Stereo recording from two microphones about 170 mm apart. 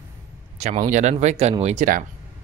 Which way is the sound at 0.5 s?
40° right (ahead or behind).